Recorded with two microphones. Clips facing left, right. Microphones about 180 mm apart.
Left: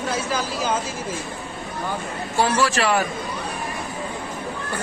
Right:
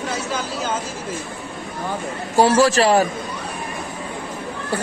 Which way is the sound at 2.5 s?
40° right (ahead or behind).